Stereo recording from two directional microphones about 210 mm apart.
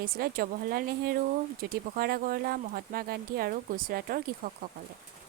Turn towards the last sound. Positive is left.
turn(degrees=-45)  # may be behind; listen again after turning